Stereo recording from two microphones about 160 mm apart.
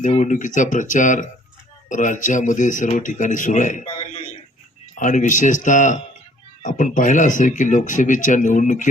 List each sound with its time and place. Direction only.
0.1 s speech: 50° left (ahead or behind)
3.8 s a sound: 30° left (ahead or behind)
4.9 s speech: 50° left (ahead or behind)